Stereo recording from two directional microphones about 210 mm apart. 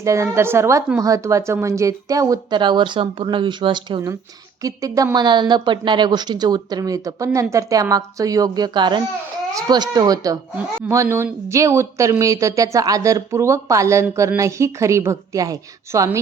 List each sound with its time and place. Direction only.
0.0 s a woman's voice: 15° right (ahead or behind)